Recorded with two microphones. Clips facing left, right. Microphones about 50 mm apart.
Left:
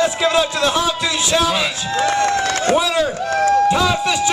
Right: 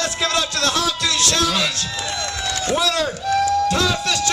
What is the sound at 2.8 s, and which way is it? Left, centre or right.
Speech, centre.